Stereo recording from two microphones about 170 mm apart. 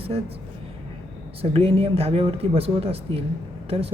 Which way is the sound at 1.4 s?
35° right (ahead or behind).